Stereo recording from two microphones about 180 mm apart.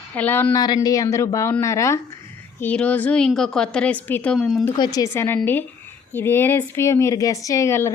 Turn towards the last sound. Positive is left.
turn(degrees=15)  # may be behind; listen again after turning